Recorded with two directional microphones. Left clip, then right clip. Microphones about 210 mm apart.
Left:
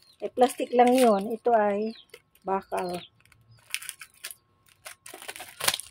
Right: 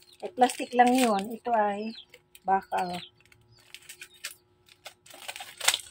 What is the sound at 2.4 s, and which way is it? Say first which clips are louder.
Speech: right 3 dB; 50° left (ahead or behind).